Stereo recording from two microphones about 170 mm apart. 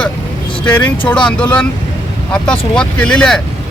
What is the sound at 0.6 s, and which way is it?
Speech, 10° left (ahead or behind).